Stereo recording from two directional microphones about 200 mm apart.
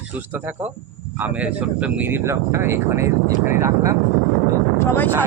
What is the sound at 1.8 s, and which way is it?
Speech, 10° right (ahead or behind).